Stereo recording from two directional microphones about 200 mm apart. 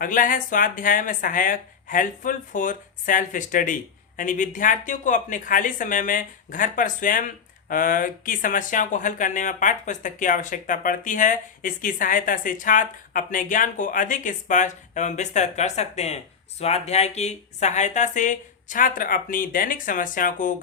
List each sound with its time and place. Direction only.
0.0 s speech: 40° left (ahead or behind)